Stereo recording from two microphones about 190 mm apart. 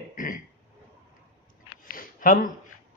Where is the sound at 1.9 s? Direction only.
45° left (ahead or behind).